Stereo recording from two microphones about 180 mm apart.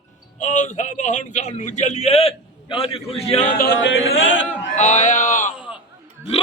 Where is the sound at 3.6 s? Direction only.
70° left (ahead or behind); by 4.7 s 90° left.